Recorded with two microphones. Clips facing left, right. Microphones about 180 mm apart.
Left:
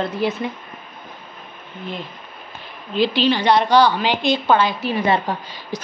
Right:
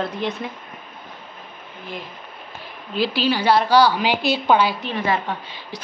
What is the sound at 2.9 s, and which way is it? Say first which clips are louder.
A woman's voice: left 3 dB; 5° right (ahead or behind).